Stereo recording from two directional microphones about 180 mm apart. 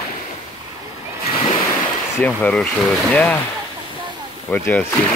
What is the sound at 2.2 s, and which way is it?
Speech, 5° left (ahead or behind).